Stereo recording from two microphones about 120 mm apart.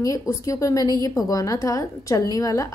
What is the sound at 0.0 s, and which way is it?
A woman's voice, 25° left (ahead or behind).